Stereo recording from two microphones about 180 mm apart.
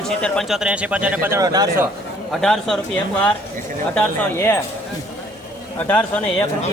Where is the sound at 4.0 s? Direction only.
15° left (ahead or behind).